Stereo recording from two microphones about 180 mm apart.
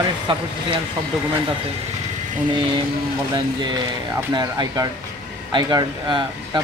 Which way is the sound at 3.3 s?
25° right (ahead or behind).